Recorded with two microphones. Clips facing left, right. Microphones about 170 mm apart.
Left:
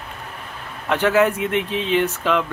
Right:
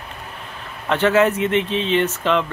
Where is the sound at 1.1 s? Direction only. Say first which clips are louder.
Right 1 dB; 5° left (ahead or behind).